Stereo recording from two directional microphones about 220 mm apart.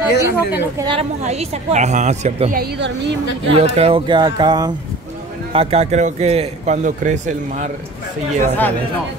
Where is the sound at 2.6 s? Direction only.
50° right (ahead or behind).